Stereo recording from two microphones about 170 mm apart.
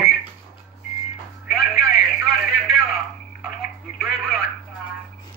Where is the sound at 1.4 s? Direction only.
Centre (ahead or behind).